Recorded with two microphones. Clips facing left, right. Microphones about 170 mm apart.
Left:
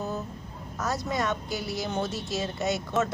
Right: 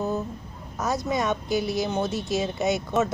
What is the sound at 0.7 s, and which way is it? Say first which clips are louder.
A woman's voice: right 3 dB; 15° right (ahead or behind).